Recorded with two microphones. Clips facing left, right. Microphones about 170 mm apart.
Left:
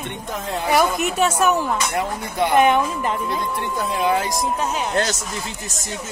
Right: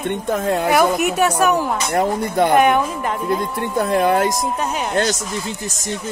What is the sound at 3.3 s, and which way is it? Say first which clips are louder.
Speech: right 4 dB; 50° right (ahead or behind).